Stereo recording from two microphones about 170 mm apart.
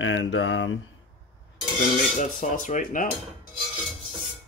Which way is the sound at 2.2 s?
45° left (ahead or behind).